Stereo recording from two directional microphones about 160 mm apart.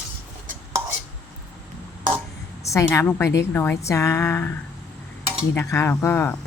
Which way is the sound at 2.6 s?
20° left (ahead or behind).